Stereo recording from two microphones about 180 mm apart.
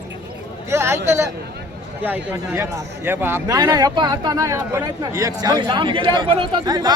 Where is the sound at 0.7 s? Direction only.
15° right (ahead or behind).